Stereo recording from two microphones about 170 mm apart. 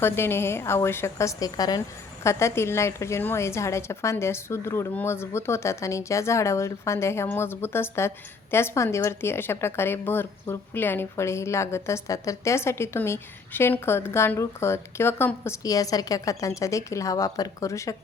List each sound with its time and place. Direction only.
0.0 s a woman's voice: 15° left (ahead or behind)